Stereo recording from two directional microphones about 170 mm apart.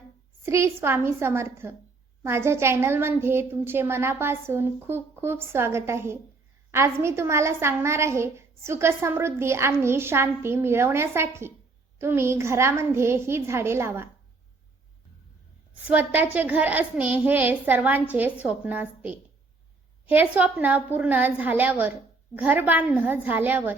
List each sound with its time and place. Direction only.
0.4 s a woman's voice: 15° right (ahead or behind)
15.9 s a woman's voice: 10° right (ahead or behind)